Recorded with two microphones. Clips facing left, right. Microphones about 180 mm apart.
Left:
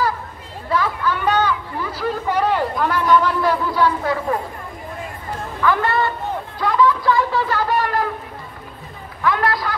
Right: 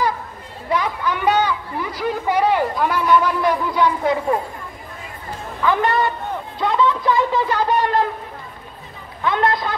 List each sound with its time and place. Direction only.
0.7 s a sound: 15° right (ahead or behind)
5.6 s speech: 20° right (ahead or behind)
9.2 s a man's voice: 25° right (ahead or behind)